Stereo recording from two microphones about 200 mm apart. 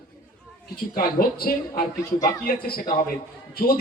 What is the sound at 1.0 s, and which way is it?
A man's voice, 45° left (ahead or behind).